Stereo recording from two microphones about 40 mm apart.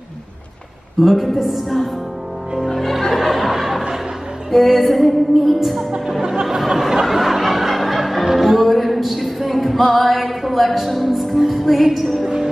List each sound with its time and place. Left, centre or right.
1.0 s music: centre
6.2 s music: centre